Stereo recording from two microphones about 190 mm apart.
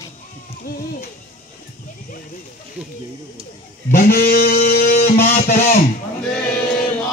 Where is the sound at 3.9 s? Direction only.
50° left (ahead or behind).